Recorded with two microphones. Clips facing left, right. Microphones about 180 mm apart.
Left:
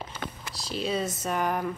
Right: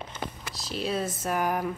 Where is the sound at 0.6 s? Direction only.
Centre (ahead or behind).